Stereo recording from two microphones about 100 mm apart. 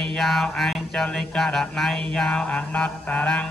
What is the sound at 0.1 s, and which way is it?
Mantra, centre (ahead or behind).